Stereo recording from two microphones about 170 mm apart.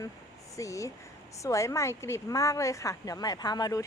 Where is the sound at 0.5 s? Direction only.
20° left (ahead or behind).